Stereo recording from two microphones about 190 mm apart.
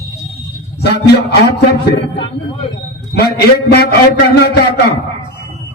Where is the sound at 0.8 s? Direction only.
60° left (ahead or behind).